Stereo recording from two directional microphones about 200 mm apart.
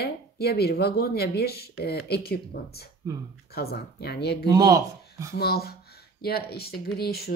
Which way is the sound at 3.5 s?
50° left (ahead or behind).